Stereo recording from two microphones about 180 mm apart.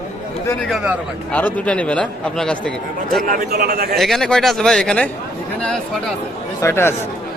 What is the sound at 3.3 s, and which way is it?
Speech, 60° right (ahead or behind).